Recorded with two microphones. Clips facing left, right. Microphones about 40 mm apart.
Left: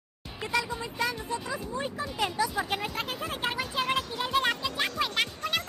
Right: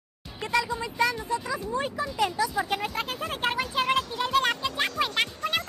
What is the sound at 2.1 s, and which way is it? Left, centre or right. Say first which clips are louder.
Speech: right 2 dB; centre.